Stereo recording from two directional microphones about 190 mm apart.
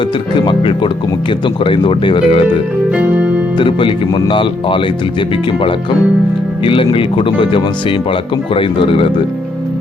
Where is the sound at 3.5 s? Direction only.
25° left (ahead or behind).